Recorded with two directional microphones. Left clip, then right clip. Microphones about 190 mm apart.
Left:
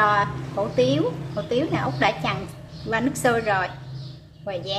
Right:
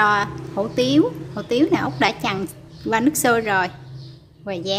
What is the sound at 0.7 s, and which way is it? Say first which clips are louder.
A woman's voice: right 3 dB; 60° right (ahead or behind).